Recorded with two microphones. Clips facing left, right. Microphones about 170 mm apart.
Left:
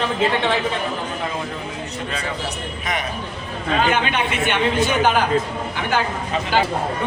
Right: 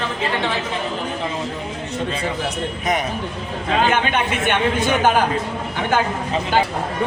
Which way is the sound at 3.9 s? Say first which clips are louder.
Right 1 dB; 50° right (ahead or behind).